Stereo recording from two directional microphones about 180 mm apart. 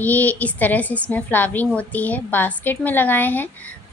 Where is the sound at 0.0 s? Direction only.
10° left (ahead or behind).